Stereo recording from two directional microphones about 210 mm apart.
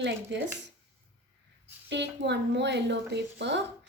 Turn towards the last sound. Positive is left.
turn(degrees=-55)  # may be behind; listen again after turning